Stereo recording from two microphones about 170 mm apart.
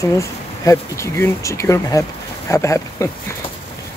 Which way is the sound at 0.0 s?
20° left (ahead or behind).